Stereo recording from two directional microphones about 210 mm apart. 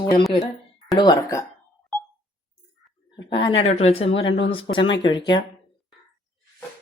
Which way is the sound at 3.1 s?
20° left (ahead or behind).